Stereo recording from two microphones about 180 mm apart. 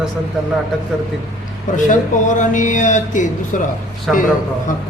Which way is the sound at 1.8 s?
45° left (ahead or behind).